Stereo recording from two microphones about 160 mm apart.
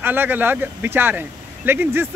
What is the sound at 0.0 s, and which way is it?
Speech, 15° right (ahead or behind).